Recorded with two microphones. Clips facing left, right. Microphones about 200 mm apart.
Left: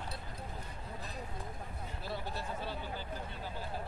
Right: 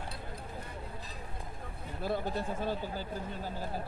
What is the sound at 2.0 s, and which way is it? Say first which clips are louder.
Speech: right 8 dB; 50° right (ahead or behind).